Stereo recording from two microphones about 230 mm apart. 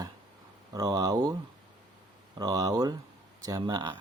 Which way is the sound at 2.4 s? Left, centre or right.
Centre.